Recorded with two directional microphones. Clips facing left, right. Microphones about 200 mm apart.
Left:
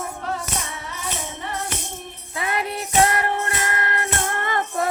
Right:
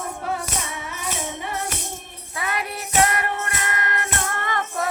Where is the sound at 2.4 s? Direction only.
25° left (ahead or behind).